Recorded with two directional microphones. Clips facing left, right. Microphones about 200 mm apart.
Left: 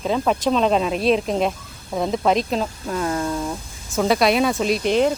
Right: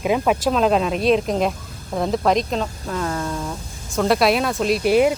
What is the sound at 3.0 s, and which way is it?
Speech, 20° left (ahead or behind).